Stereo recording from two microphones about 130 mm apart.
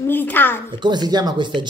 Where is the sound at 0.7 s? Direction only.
35° right (ahead or behind).